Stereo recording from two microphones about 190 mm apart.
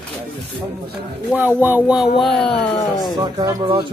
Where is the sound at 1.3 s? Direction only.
10° right (ahead or behind).